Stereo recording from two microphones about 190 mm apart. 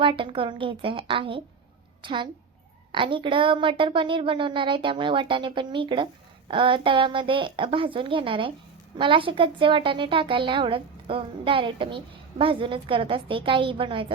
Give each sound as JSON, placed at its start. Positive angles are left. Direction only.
{"t": 0.0, "sound": "a woman's voice", "side_deg": -25}